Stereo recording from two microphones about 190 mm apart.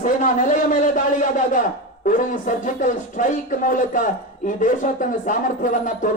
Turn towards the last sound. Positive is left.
turn(degrees=45)  # may be behind; listen again after turning